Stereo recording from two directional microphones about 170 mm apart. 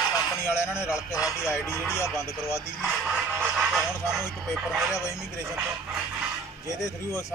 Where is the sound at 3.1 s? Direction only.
5° right (ahead or behind).